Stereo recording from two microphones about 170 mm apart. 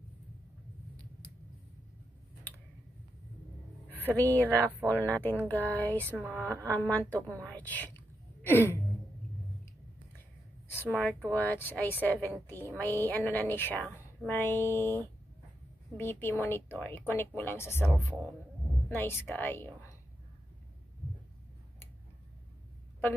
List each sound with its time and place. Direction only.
4.1 s a woman's voice: 10° left (ahead or behind)
6.0 s speech: 10° right (ahead or behind)
6.3 s a woman's voice: 10° left (ahead or behind)
10.7 s a woman's voice: 10° left (ahead or behind)
16.0 s a woman's voice: 15° left (ahead or behind)